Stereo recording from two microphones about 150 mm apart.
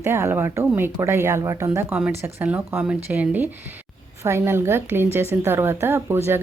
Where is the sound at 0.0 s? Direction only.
15° right (ahead or behind).